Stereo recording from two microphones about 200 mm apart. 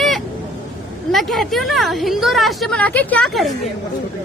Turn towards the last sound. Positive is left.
turn(degrees=0)  # may be behind; listen again after turning